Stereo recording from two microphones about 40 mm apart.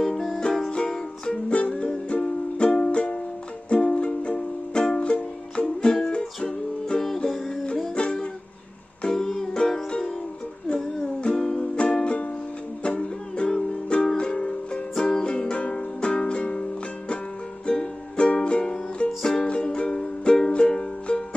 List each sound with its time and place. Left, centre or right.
0.0 s music: centre
0.4 s music: centre
1.5 s music: left
9.1 s music: centre
9.8 s music: left
11.3 s music: centre
11.7 s music: left
15.5 s music: left
17.6 s music: left